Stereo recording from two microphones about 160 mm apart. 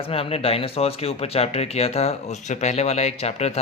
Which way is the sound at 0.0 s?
35° left (ahead or behind).